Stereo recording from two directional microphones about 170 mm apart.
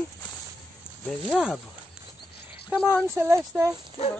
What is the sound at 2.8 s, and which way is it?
Speech, 5° left (ahead or behind).